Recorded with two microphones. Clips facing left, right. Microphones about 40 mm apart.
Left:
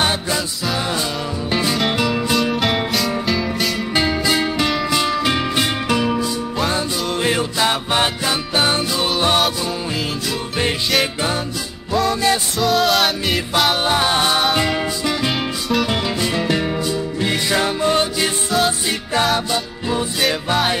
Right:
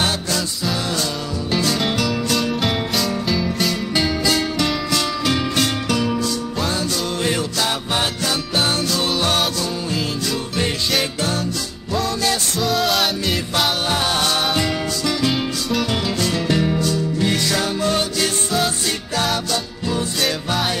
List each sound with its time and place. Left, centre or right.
1.5 s music: left
3.9 s music: centre
12.1 s music: left
12.5 s music: centre
13.8 s music: left
19.3 s music: centre